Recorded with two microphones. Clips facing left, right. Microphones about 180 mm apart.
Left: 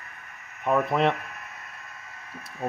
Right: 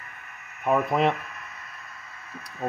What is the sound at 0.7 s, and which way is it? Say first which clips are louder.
Speech: even; centre (ahead or behind).